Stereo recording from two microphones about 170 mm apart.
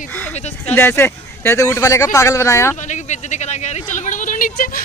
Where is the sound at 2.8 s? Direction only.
45° left (ahead or behind).